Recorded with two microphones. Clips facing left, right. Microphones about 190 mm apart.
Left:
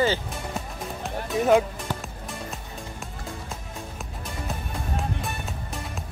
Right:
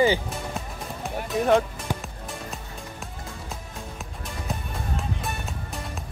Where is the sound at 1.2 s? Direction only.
Centre (ahead or behind).